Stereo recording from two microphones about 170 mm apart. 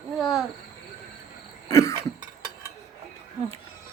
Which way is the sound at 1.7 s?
15° left (ahead or behind).